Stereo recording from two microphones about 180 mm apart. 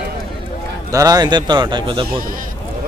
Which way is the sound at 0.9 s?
20° right (ahead or behind).